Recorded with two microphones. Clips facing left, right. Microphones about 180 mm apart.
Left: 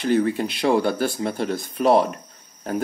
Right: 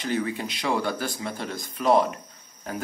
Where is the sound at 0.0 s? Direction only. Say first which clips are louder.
Left 7 dB; 55° left (ahead or behind).